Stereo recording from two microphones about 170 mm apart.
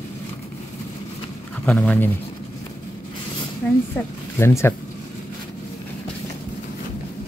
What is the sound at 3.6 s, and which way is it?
Speech, 10° left (ahead or behind).